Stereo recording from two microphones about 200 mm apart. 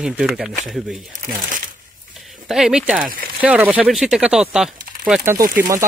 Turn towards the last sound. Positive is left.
turn(degrees=-15)  # may be behind; listen again after turning